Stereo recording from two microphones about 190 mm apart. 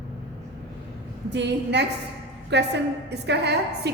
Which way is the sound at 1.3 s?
65° right (ahead or behind).